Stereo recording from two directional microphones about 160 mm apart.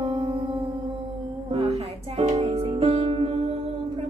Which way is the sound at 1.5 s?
40° right (ahead or behind).